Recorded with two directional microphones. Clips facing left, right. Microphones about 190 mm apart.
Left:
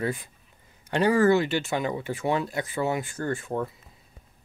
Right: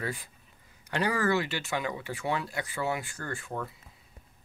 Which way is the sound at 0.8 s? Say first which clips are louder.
Left 8 dB; 25° left (ahead or behind).